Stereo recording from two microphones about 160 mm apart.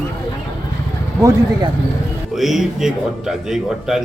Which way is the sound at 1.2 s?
20° right (ahead or behind).